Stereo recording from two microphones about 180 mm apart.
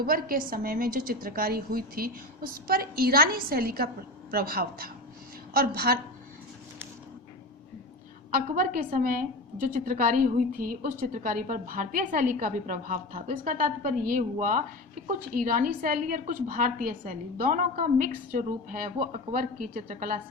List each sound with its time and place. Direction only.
0.0 s a woman's voice: 55° right (ahead or behind)
8.5 s a woman's voice: 50° right (ahead or behind)